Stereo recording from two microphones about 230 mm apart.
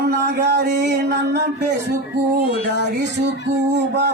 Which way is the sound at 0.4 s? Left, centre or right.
Right.